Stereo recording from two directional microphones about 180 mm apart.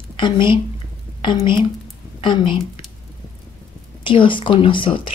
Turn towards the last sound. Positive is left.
turn(degrees=30)  # may be behind; listen again after turning